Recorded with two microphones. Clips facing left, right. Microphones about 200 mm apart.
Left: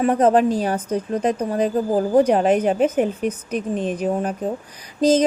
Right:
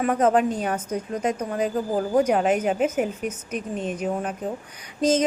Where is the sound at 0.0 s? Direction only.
30° left (ahead or behind).